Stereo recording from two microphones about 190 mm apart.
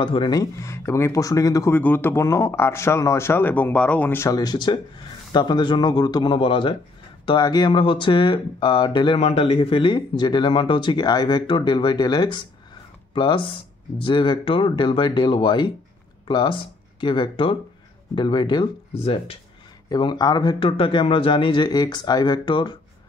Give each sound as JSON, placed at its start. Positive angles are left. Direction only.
{"t": 0.0, "sound": "speech", "side_deg": 25}